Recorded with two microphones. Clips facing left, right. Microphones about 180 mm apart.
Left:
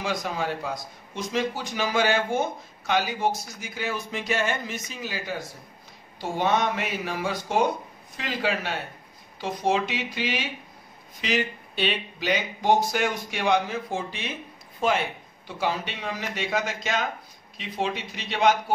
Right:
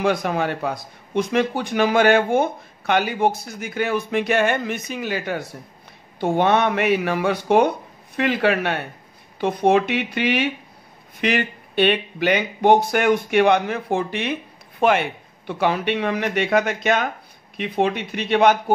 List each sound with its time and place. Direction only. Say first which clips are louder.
0.0 s speech: right 8 dB; 60° right (ahead or behind)